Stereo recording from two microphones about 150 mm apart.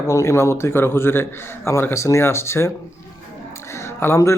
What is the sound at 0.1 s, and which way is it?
A man's voice, 20° left (ahead or behind).